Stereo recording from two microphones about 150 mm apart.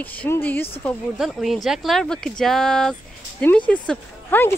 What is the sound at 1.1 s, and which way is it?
A woman's voice, centre (ahead or behind).